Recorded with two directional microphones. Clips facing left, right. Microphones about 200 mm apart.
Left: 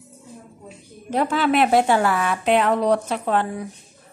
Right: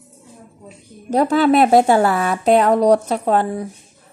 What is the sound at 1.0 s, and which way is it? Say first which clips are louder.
Speech: right 6 dB; 40° right (ahead or behind).